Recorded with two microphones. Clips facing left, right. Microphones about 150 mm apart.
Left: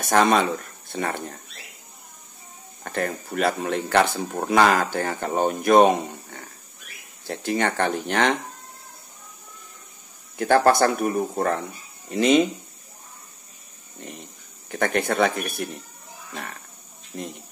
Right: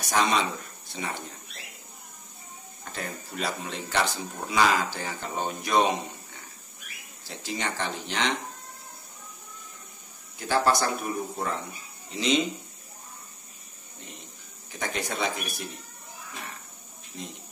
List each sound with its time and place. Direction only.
0.0 s speech: 55° left (ahead or behind)
2.8 s speech: 60° left (ahead or behind)
10.3 s speech: 55° left (ahead or behind)
14.7 s speech: 55° left (ahead or behind)
17.1 s speech: 65° left (ahead or behind)